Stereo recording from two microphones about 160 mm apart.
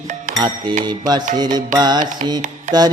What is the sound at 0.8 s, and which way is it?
Mantra, 25° right (ahead or behind).